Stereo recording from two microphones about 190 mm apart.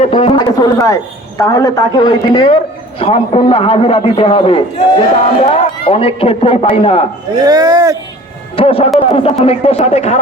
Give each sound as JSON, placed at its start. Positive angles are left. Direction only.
{"t": 0.1, "sound": "a man's voice", "side_deg": 25}
{"t": 7.3, "sound": "speech", "side_deg": -20}
{"t": 8.5, "sound": "a man's voice", "side_deg": 30}